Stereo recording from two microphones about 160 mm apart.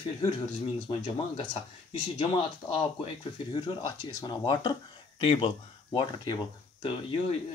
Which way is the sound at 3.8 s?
25° left (ahead or behind).